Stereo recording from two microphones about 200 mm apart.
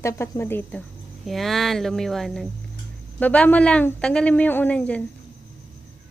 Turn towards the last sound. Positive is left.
turn(degrees=5)  # may be behind; listen again after turning